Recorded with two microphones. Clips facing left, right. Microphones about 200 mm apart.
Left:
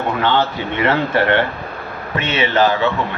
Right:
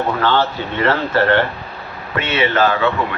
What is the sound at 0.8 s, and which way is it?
A man's voice, 15° left (ahead or behind).